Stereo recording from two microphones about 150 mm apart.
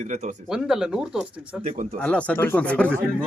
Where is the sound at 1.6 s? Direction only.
50° right (ahead or behind).